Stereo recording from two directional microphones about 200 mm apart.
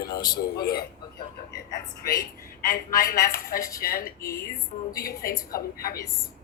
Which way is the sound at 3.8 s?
45° left (ahead or behind).